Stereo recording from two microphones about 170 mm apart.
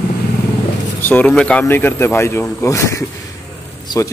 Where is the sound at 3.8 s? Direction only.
20° left (ahead or behind).